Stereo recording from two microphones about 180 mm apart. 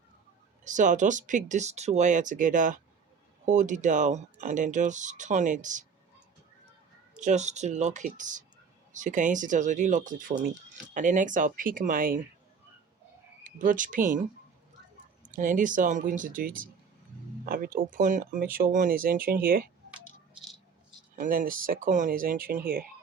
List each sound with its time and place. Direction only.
0.6 s speech: 45° right (ahead or behind)
7.2 s speech: 40° right (ahead or behind)
13.4 s speech: 45° right (ahead or behind)
15.3 s speech: 45° right (ahead or behind)
21.2 s speech: 50° right (ahead or behind)